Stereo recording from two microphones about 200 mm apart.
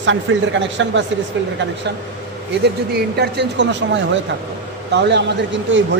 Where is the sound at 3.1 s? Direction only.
55° right (ahead or behind).